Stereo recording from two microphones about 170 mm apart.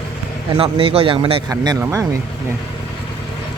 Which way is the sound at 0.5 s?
35° right (ahead or behind).